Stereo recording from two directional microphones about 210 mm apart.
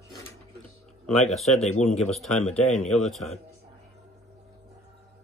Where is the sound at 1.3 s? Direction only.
Centre (ahead or behind).